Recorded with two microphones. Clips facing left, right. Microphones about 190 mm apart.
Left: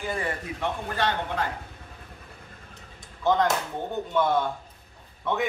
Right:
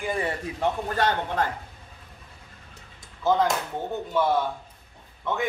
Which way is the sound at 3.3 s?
Centre (ahead or behind).